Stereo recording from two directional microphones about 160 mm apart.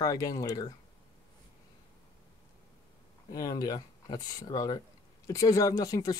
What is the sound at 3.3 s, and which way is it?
Speech, 25° left (ahead or behind).